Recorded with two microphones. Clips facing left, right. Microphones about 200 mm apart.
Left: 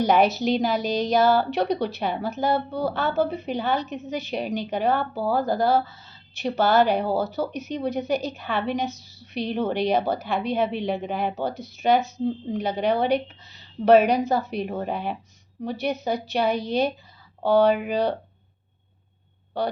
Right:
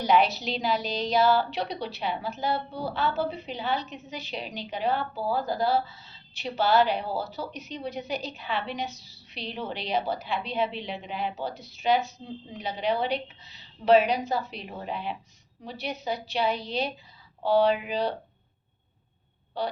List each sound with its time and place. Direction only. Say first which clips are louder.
0.0 s a woman's voice: left 4 dB; 45° left (ahead or behind)
19.6 s a woman's voice: left 4 dB; 50° left (ahead or behind)